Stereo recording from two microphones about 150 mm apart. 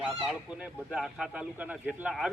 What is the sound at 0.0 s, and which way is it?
A man's voice, centre (ahead or behind).